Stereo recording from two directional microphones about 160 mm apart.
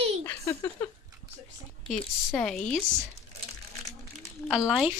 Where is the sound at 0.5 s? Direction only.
25° left (ahead or behind).